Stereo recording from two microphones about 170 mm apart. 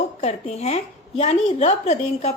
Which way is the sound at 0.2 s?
40° left (ahead or behind).